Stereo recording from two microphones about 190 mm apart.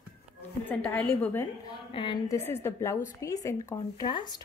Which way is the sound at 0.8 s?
10° left (ahead or behind).